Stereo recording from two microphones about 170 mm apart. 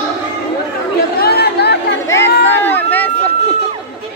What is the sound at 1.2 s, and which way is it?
Chatter, 70° left (ahead or behind).